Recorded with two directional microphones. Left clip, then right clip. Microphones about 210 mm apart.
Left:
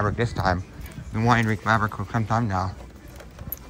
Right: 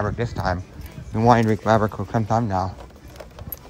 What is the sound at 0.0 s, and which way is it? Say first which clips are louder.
Speech: left 1 dB; 15° right (ahead or behind).